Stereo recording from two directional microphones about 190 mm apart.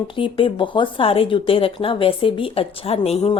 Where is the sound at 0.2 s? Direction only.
25° left (ahead or behind).